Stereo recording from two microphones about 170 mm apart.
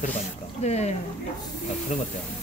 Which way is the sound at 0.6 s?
40° left (ahead or behind).